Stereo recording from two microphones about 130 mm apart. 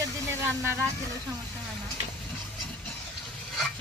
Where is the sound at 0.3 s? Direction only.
20° right (ahead or behind).